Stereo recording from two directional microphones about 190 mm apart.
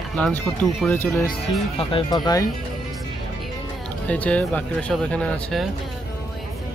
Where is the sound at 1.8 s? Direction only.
30° left (ahead or behind).